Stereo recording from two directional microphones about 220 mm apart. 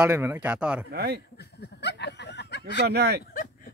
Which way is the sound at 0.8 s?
45° right (ahead or behind).